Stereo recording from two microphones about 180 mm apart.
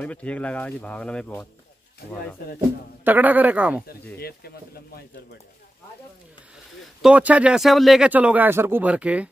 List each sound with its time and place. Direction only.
0.0 s speech: 5° left (ahead or behind)
3.0 s speech: 10° right (ahead or behind)
4.2 s speech: 60° left (ahead or behind)
7.0 s speech: 5° right (ahead or behind)